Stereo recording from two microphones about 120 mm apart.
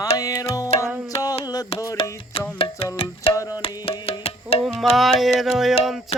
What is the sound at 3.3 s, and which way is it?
Tabla, 30° left (ahead or behind).